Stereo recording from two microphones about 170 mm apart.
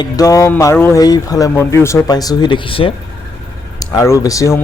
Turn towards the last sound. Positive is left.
turn(degrees=20)  # may be behind; listen again after turning